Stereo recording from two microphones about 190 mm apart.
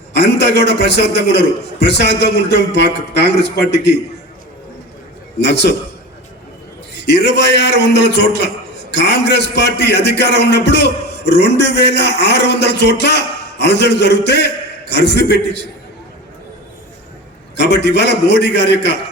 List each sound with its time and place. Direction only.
0.1 s a man's voice: 65° left (ahead or behind)
5.4 s a man's voice: 65° left (ahead or behind)
6.9 s a man's voice: 65° left (ahead or behind)
17.6 s a man's voice: 65° left (ahead or behind)